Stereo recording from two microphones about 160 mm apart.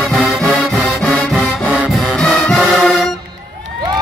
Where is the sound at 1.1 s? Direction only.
10° right (ahead or behind).